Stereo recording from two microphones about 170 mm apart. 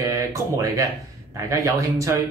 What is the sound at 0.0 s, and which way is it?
Speech, 20° right (ahead or behind).